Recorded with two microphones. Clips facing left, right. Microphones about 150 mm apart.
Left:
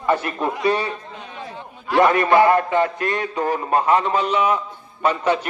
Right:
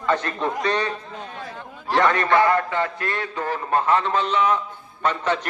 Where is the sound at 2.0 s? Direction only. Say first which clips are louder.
Left 4 dB; 20° left (ahead or behind).